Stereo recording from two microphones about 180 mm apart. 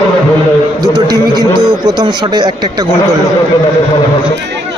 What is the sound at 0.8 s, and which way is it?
A man's voice, 25° right (ahead or behind).